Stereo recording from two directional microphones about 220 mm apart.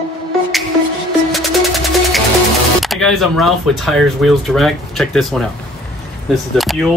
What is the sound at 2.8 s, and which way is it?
Speech, centre (ahead or behind).